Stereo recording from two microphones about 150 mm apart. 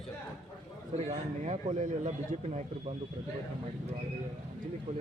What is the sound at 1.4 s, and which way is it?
Speech, 50° right (ahead or behind).